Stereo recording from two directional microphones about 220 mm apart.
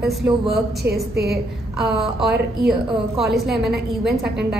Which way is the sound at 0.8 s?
45° right (ahead or behind).